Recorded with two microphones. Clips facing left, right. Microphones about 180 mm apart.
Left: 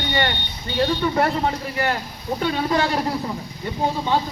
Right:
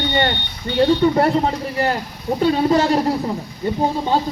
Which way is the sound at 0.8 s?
25° right (ahead or behind).